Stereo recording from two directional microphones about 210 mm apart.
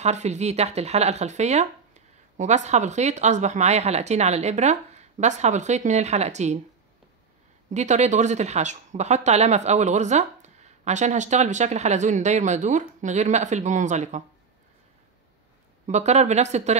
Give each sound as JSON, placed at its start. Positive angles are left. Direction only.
{"t": 0.0, "sound": "speech", "side_deg": -30}
{"t": 7.7, "sound": "speech", "side_deg": -35}
{"t": 15.9, "sound": "speech", "side_deg": -35}